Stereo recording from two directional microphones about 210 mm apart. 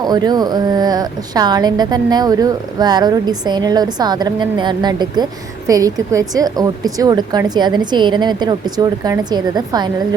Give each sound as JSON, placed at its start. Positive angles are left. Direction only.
{"t": 0.0, "sound": "a woman's voice", "side_deg": -20}